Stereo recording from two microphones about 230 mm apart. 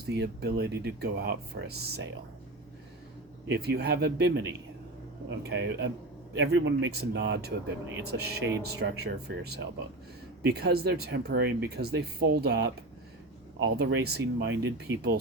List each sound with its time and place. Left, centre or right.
0.0 s speech: right
3.5 s speech: right